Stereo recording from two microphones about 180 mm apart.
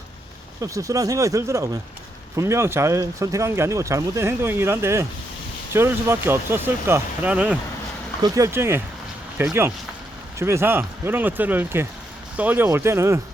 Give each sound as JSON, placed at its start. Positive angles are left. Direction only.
{"t": 0.6, "sound": "speech", "side_deg": -20}